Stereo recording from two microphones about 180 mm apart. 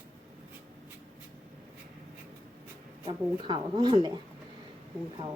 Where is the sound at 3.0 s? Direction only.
25° right (ahead or behind).